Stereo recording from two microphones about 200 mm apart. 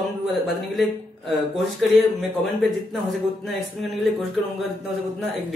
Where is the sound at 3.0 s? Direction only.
Centre (ahead or behind).